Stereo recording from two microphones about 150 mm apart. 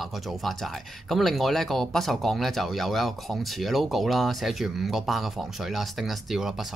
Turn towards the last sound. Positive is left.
turn(degrees=0)  # may be behind; listen again after turning